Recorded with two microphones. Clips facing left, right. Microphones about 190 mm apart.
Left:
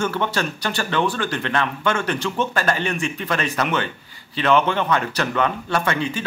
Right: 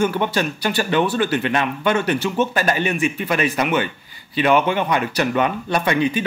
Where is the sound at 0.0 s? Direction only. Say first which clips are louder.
Right 3 dB; 15° right (ahead or behind).